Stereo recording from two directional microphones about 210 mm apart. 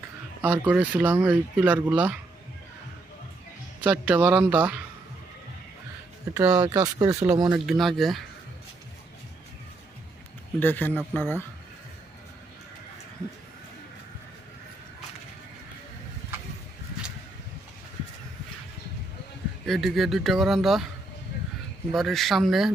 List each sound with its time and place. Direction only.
0.4 s speech: 5° right (ahead or behind)
3.8 s a man's voice: 10° right (ahead or behind)
6.3 s speech: 20° right (ahead or behind)
7.5 s a man's voice: centre (ahead or behind)
10.6 s a man's voice: 10° left (ahead or behind)
19.6 s a man's voice: centre (ahead or behind)
21.9 s a man's voice: centre (ahead or behind)